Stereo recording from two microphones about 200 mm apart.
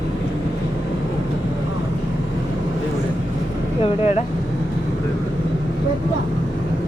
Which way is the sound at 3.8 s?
35° left (ahead or behind).